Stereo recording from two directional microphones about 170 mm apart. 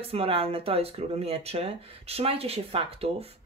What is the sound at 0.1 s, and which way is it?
Speech, 35° right (ahead or behind).